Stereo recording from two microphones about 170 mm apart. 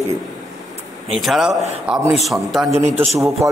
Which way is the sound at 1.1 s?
Centre (ahead or behind).